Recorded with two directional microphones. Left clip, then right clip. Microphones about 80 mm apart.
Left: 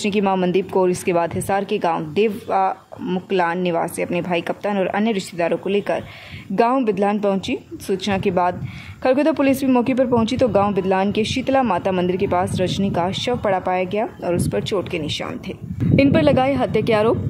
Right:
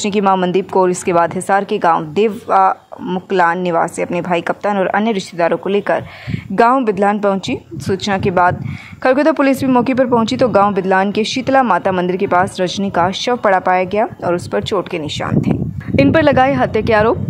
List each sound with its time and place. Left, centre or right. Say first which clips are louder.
0.0 s a woman's voice: right 5 dB; centre
4.7 s a woman's voice: right 5 dB; centre